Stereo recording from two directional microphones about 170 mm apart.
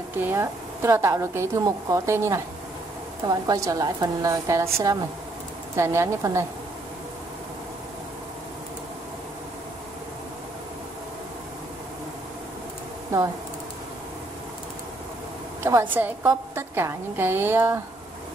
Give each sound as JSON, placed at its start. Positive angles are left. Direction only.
{"t": 0.1, "sound": "a woman's voice", "side_deg": -10}
{"t": 15.6, "sound": "a woman's voice", "side_deg": -10}